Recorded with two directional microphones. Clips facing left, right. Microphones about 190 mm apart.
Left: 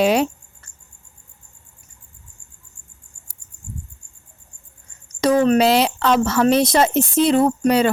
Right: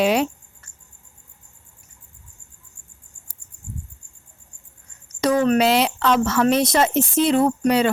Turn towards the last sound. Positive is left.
turn(degrees=35)  # may be behind; listen again after turning